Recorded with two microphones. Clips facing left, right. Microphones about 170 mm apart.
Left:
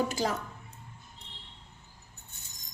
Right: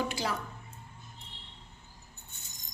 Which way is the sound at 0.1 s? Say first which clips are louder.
Left 3 dB; 45° left (ahead or behind).